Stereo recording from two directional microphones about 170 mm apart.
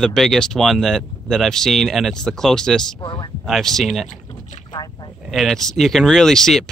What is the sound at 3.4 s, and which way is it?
Speech, centre (ahead or behind).